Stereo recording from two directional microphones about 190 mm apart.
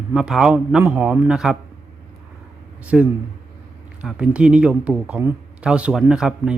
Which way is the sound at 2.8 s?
5° right (ahead or behind).